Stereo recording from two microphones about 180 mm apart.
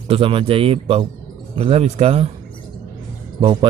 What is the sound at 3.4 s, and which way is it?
Speech, 25° right (ahead or behind).